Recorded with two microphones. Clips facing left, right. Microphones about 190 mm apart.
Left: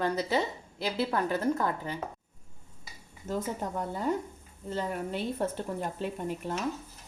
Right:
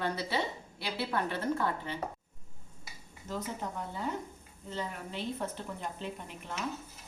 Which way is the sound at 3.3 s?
45° left (ahead or behind).